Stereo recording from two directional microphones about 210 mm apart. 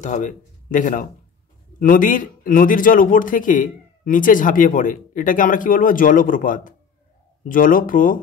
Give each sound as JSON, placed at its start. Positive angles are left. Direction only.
{"t": 0.0, "sound": "a man's voice", "side_deg": 35}